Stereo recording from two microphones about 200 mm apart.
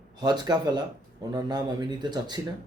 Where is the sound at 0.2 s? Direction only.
20° right (ahead or behind).